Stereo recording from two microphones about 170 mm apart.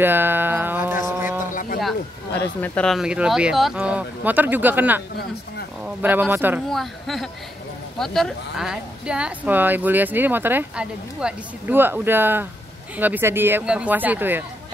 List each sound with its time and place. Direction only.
0.0 s music: 10° right (ahead or behind)
1.0 s a sound: 10° right (ahead or behind)
1.4 s a sound: 50° left (ahead or behind)
2.6 s speech: 5° left (ahead or behind); by 5.0 s 10° right (ahead or behind)
6.0 s speech: 10° right (ahead or behind)
6.7 s speech: centre (ahead or behind)